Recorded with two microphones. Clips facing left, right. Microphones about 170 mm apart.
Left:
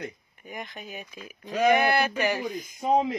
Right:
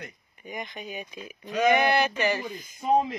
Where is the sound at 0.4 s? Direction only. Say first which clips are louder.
Right 2 dB; centre (ahead or behind).